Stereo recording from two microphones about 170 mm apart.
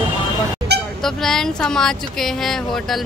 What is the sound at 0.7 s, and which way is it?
Vehicle, 75° right (ahead or behind).